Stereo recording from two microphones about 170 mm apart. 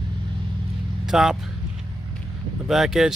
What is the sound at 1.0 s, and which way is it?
Speech, 5° right (ahead or behind).